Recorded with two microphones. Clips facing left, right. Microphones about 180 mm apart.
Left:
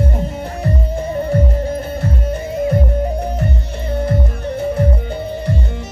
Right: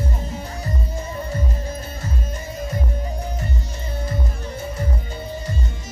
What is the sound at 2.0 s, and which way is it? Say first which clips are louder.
Music: left 9 dB; 60° left (ahead or behind).